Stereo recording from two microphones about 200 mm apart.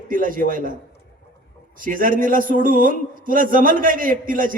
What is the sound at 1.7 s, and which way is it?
A man's voice, 45° right (ahead or behind).